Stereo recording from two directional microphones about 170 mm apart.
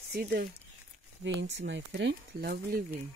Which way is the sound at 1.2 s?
90° right.